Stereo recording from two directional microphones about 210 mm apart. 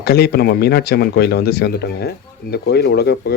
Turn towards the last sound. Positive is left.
turn(degrees=50)  # may be behind; listen again after turning